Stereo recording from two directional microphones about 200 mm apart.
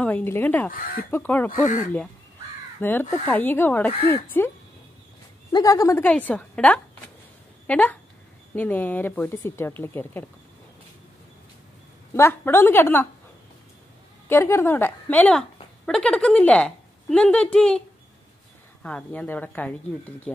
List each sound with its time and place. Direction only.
0.0 s speech: 10° left (ahead or behind)
0.7 s speech: 45° left (ahead or behind)
1.1 s speech: 10° left (ahead or behind)
1.6 s speech: 40° left (ahead or behind)
2.8 s speech: 10° left (ahead or behind)
5.5 s speech: 15° left (ahead or behind)
12.1 s speech: 10° left (ahead or behind)
14.3 s a woman's voice: 10° left (ahead or behind)